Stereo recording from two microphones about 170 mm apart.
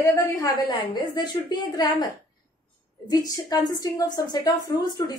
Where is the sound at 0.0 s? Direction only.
20° left (ahead or behind).